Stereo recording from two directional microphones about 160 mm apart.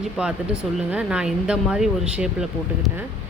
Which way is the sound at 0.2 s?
10° right (ahead or behind).